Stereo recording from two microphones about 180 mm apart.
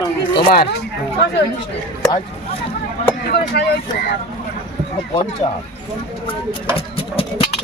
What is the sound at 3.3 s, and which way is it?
Speech, 65° left (ahead or behind).